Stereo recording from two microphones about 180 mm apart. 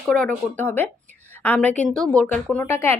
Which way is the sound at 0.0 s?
5° left (ahead or behind).